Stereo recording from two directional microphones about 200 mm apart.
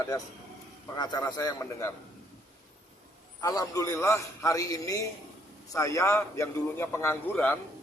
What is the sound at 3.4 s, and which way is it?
A man's voice, 15° left (ahead or behind).